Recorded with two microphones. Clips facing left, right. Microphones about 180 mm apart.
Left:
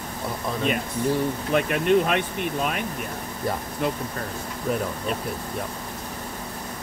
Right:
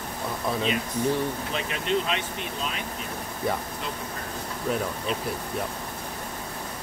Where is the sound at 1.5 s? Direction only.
55° left (ahead or behind).